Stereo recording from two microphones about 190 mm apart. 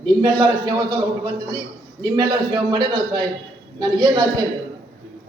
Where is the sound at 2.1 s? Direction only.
25° right (ahead or behind).